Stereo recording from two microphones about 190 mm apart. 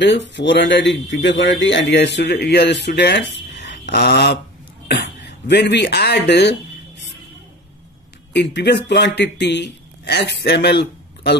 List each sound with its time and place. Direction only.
0.0 s speech: 70° left (ahead or behind)
8.3 s speech: 65° left (ahead or behind)